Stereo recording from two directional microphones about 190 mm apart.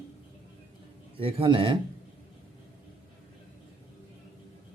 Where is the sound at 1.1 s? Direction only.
30° right (ahead or behind).